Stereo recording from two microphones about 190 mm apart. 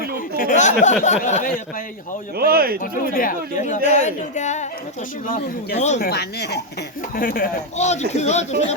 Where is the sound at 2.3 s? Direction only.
50° right (ahead or behind).